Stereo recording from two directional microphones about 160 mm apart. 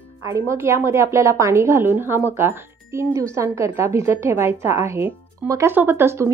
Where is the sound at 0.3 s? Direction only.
15° right (ahead or behind).